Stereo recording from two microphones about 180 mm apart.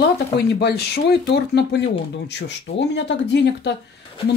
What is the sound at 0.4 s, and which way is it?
Speech, 65° left (ahead or behind).